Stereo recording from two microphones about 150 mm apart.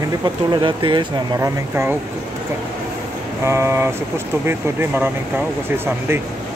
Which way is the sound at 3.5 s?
15° right (ahead or behind).